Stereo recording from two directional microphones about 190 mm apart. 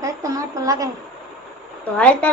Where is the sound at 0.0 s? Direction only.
20° right (ahead or behind).